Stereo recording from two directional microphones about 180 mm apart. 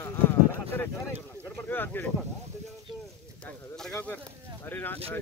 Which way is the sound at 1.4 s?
10° left (ahead or behind).